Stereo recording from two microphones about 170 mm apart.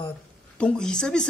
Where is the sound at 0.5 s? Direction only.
5° left (ahead or behind).